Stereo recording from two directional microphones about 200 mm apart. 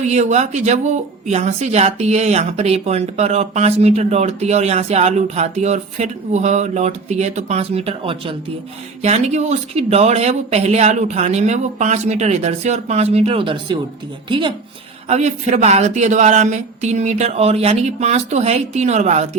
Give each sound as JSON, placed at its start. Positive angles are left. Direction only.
{"t": 0.0, "sound": "speech", "side_deg": -35}
{"t": 15.1, "sound": "speech", "side_deg": -35}